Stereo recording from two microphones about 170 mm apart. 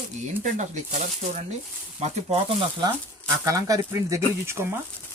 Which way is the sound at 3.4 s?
20° right (ahead or behind).